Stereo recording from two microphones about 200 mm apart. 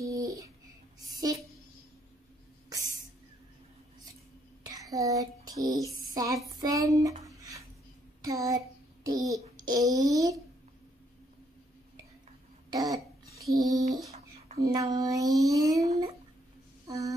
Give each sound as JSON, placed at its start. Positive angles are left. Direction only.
{"t": 0.0, "sound": "a sound", "side_deg": -15}
{"t": 4.6, "sound": "child singing", "side_deg": -15}
{"t": 6.1, "sound": "speech", "side_deg": -15}
{"t": 8.2, "sound": "child singing", "side_deg": -15}
{"t": 12.6, "sound": "cough", "side_deg": -15}
{"t": 13.6, "sound": "a child's voice", "side_deg": -15}
{"t": 16.8, "sound": "a sound", "side_deg": -15}